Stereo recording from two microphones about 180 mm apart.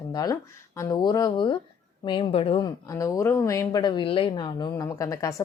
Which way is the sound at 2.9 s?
15° left (ahead or behind).